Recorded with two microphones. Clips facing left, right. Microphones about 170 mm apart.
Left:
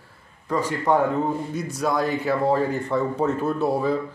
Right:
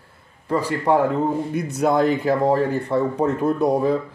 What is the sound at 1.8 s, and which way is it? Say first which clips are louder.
Speech: right 5 dB; 20° right (ahead or behind).